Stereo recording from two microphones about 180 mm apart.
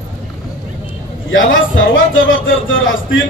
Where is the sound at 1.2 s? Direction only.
90° left.